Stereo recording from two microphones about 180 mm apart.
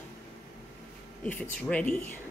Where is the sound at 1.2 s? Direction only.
5° left (ahead or behind).